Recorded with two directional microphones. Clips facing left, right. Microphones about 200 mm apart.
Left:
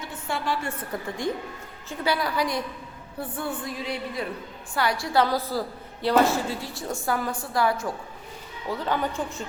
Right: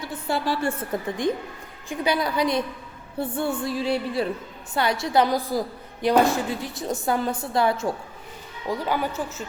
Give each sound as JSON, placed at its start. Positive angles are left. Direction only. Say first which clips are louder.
{"t": 0.1, "sound": "a woman's voice", "louder": "right 3 dB", "side_deg": -35}
{"t": 1.0, "sound": "a woman's voice", "louder": "right 3 dB", "side_deg": -20}
{"t": 3.2, "sound": "music", "louder": "right 5 dB", "side_deg": -30}
{"t": 4.7, "sound": "a woman's voice", "louder": "right 2 dB", "side_deg": -25}
{"t": 8.7, "sound": "speech", "louder": "right 1 dB", "side_deg": -10}